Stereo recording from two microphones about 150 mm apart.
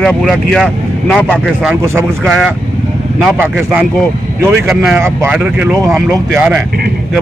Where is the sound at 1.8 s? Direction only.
20° right (ahead or behind).